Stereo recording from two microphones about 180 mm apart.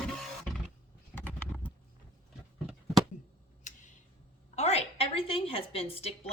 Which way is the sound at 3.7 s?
45° left (ahead or behind).